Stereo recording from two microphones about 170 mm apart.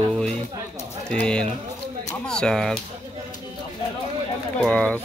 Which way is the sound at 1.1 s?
5° left (ahead or behind).